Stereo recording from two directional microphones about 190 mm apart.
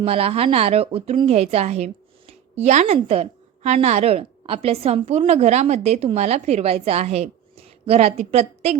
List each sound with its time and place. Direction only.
0.0 s a woman's voice: 30° right (ahead or behind)